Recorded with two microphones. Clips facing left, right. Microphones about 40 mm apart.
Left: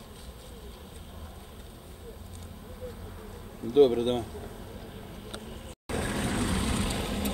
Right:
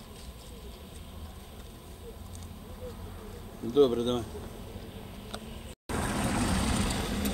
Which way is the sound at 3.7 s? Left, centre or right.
Centre.